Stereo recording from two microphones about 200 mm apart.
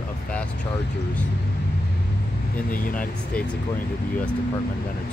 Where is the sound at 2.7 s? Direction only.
40° left (ahead or behind).